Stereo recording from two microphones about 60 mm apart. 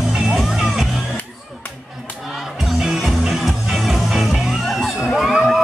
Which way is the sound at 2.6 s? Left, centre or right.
Centre.